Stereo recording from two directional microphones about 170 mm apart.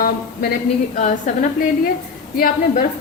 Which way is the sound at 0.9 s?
45° left (ahead or behind).